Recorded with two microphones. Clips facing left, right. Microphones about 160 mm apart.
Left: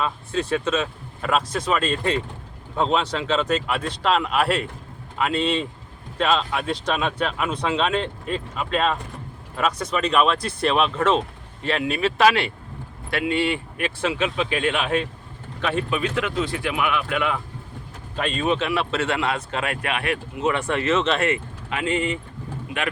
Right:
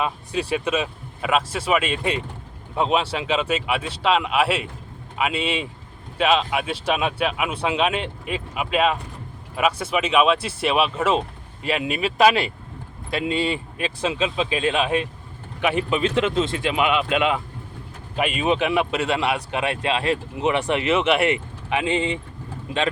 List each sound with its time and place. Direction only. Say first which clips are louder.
0.0 s speech: even; 15° right (ahead or behind)